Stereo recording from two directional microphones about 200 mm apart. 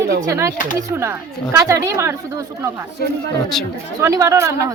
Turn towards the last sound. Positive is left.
turn(degrees=-15)  # may be behind; listen again after turning